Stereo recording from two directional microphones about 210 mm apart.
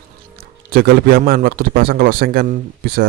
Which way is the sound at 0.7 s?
45° right (ahead or behind).